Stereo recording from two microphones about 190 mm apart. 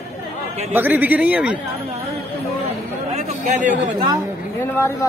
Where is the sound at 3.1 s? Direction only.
40° right (ahead or behind).